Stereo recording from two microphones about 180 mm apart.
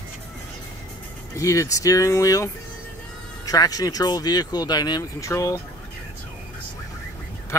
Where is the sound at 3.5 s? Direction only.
20° left (ahead or behind).